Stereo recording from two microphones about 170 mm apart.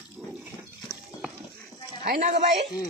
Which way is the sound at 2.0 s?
55° right (ahead or behind).